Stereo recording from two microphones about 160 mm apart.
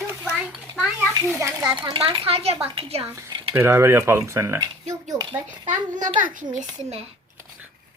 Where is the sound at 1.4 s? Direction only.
15° right (ahead or behind).